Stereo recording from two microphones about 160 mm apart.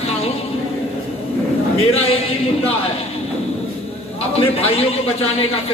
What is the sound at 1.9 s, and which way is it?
Speech, 40° left (ahead or behind).